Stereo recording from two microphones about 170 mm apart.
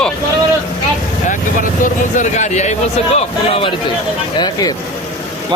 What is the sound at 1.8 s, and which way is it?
Vehicle, 45° left (ahead or behind).